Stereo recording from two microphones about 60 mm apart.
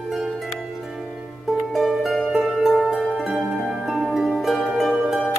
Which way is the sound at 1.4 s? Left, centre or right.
Centre.